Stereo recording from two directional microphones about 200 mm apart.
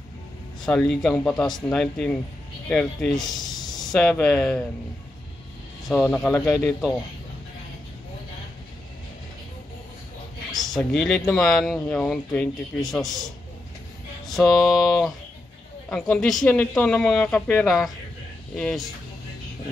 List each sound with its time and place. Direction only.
0.7 s speech: 5° left (ahead or behind)
3.5 s a sound: 20° left (ahead or behind)
3.9 s speech: 5° left (ahead or behind)
5.9 s speech: 5° left (ahead or behind)
10.6 s speech: centre (ahead or behind)